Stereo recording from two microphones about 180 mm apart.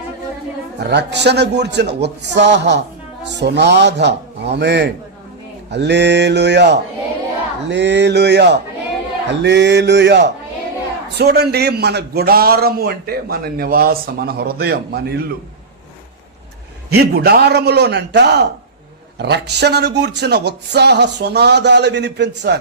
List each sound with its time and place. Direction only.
0.8 s speech: 70° right (ahead or behind)
11.2 s a man's voice: 65° right (ahead or behind)
16.9 s a man's voice: 60° right (ahead or behind)